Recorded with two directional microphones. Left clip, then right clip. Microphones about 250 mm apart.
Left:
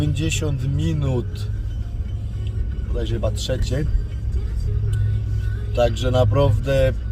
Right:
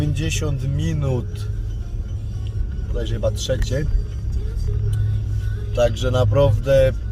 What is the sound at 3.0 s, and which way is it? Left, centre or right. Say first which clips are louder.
Speech: right 2 dB; centre.